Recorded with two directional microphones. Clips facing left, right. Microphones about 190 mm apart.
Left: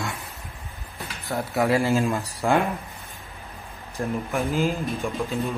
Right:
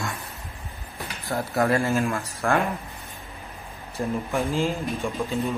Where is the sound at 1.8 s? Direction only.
15° left (ahead or behind).